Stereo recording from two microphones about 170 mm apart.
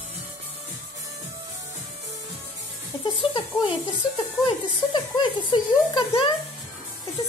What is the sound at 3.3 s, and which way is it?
Speech, 30° left (ahead or behind).